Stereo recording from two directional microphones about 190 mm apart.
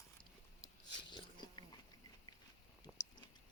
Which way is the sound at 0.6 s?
25° left (ahead or behind).